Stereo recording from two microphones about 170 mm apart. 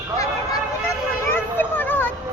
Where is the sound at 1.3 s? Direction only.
10° left (ahead or behind).